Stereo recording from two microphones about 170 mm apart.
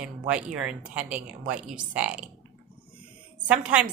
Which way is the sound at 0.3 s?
5° right (ahead or behind).